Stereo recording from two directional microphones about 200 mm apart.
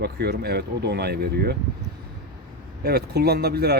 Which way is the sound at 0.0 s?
55° right (ahead or behind).